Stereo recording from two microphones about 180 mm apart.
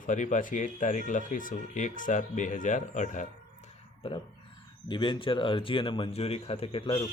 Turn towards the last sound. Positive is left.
turn(degrees=30)  # may be behind; listen again after turning